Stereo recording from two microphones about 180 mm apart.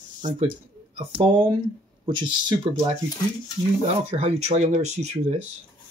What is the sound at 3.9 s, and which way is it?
Speech, 35° right (ahead or behind).